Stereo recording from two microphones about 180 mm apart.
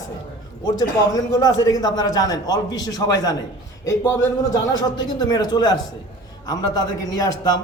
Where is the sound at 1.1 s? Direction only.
20° left (ahead or behind).